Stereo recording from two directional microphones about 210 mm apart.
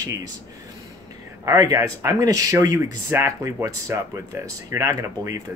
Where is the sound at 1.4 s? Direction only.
15° right (ahead or behind).